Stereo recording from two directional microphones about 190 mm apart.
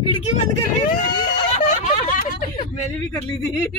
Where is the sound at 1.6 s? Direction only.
45° left (ahead or behind).